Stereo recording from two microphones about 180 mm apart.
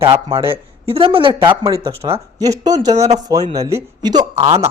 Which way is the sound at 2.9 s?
35° right (ahead or behind).